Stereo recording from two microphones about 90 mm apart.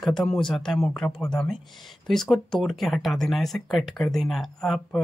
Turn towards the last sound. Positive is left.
turn(degrees=0)  # may be behind; listen again after turning